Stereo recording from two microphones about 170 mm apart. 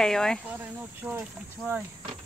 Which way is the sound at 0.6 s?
10° right (ahead or behind).